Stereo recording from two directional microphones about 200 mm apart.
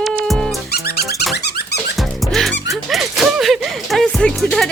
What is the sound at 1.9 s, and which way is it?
Dog, centre (ahead or behind).